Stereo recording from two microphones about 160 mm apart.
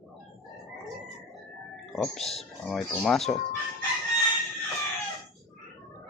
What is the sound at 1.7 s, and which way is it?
Speech, centre (ahead or behind).